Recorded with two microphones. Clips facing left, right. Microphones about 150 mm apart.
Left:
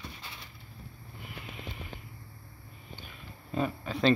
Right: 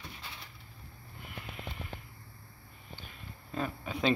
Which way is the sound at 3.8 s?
10° right (ahead or behind).